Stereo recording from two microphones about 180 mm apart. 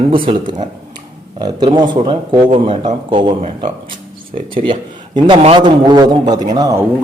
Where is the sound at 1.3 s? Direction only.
25° right (ahead or behind).